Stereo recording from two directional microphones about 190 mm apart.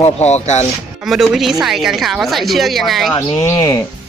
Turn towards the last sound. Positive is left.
turn(degrees=15)  # may be behind; listen again after turning